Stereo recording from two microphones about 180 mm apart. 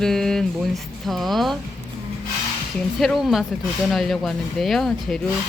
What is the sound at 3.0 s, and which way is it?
Speech, centre (ahead or behind).